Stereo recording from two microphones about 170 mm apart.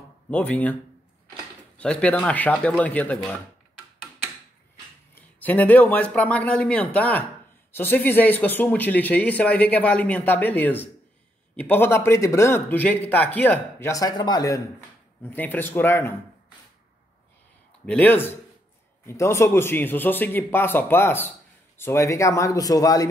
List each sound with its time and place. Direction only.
0.3 s speech: 10° left (ahead or behind)
1.8 s speech: 5° left (ahead or behind)
5.1 s speech: 10° left (ahead or behind)
15.2 s speech: 10° left (ahead or behind)
17.8 s speech: 10° left (ahead or behind)